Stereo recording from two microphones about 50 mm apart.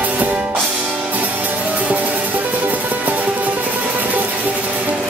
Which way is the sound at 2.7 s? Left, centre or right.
Right.